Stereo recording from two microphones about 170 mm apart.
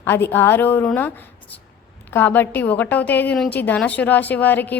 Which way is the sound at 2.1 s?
10° left (ahead or behind).